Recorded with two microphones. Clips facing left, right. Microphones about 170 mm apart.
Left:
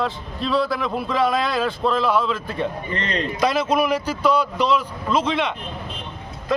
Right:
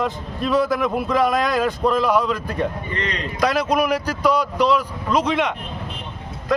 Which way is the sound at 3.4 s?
10° right (ahead or behind).